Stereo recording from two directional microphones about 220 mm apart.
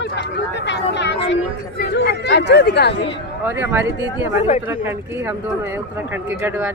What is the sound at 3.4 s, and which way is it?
Speech, 10° right (ahead or behind).